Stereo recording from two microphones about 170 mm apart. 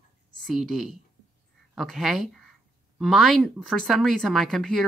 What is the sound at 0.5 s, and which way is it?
Speech, centre (ahead or behind).